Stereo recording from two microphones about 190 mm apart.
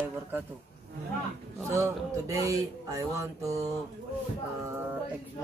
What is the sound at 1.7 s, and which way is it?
Speech, 15° right (ahead or behind).